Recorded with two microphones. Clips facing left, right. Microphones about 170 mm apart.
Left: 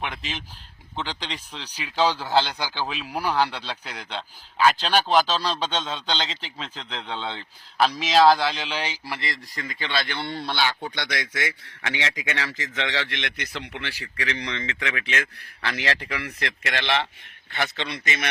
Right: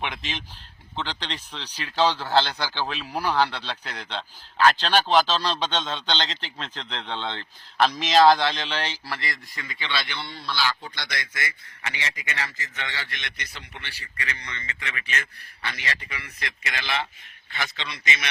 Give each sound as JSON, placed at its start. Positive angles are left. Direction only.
{"t": 0.0, "sound": "a man's voice", "side_deg": 5}
{"t": 9.6, "sound": "speech", "side_deg": 45}
{"t": 17.5, "sound": "speech", "side_deg": 55}